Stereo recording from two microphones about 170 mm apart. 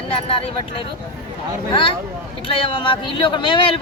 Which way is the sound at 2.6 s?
30° left (ahead or behind).